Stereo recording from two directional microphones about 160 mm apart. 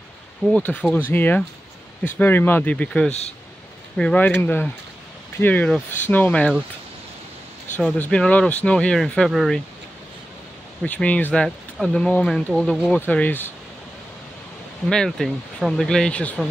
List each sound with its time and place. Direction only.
0.5 s speech: 10° left (ahead or behind)
3.1 s speech: 40° left (ahead or behind)
3.9 s speech: 5° left (ahead or behind)
7.8 s speech: 5° left (ahead or behind)
10.8 s speech: 10° left (ahead or behind)
14.9 s speech: 5° left (ahead or behind)